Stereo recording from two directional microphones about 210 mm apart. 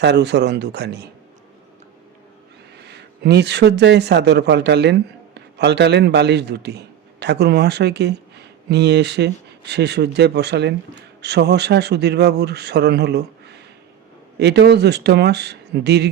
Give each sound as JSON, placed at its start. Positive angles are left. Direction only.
{"t": 0.0, "sound": "speech", "side_deg": -55}
{"t": 2.8, "sound": "speech", "side_deg": -55}